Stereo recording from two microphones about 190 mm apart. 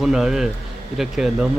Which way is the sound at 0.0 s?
Centre (ahead or behind).